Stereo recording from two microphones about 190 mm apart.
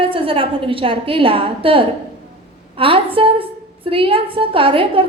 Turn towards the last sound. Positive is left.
turn(degrees=-30)  # may be behind; listen again after turning